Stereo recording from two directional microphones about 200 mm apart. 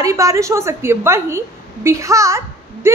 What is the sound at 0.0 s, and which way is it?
A woman's voice, 15° right (ahead or behind).